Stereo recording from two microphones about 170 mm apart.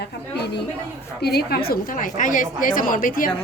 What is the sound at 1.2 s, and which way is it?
A woman's voice, 70° left (ahead or behind).